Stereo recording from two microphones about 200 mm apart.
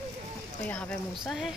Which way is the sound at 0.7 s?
5° left (ahead or behind).